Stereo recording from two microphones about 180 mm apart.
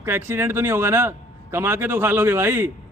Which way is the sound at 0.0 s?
15° right (ahead or behind).